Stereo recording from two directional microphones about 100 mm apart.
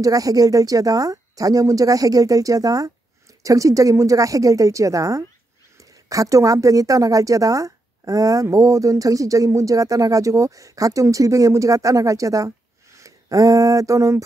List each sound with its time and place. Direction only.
0.0 s speech: 35° right (ahead or behind)